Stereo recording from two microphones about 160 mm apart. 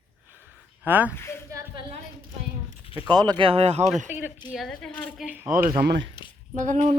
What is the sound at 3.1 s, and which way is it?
Speech, 25° right (ahead or behind).